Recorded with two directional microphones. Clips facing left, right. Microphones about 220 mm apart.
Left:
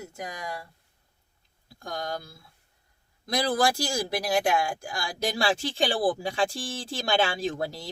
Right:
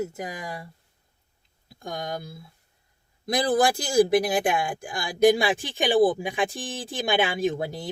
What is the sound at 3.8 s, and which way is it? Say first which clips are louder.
Speech: right 9 dB; 20° right (ahead or behind).